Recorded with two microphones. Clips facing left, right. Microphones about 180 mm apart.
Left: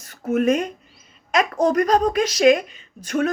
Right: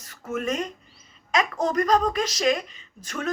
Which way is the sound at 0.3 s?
55° left (ahead or behind).